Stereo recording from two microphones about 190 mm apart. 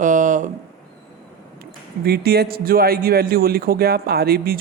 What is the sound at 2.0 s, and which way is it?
A man's voice, 55° right (ahead or behind).